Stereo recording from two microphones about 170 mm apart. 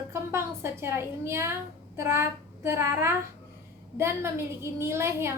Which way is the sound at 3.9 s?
15° right (ahead or behind).